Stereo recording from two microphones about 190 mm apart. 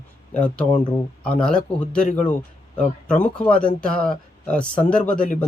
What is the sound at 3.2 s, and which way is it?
Speech, 5° left (ahead or behind).